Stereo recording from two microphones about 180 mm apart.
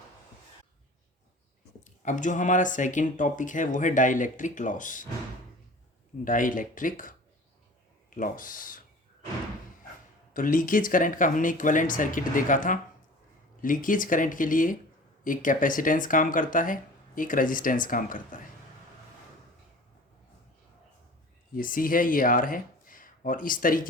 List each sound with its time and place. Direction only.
1.8 s speech: 45° left (ahead or behind)
6.2 s speech: 50° left (ahead or behind)
10.3 s speech: 50° left (ahead or behind)
21.5 s speech: 50° left (ahead or behind)